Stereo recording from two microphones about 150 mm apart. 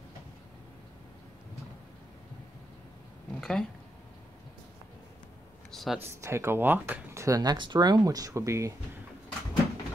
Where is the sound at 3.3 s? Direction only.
Centre (ahead or behind).